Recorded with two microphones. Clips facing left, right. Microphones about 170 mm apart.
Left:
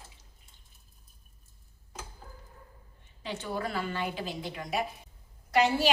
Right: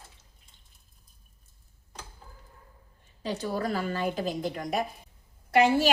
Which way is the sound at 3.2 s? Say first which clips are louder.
Right 4 dB; 40° right (ahead or behind).